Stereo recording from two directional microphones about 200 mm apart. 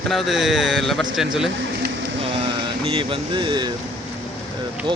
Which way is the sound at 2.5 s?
25° right (ahead or behind).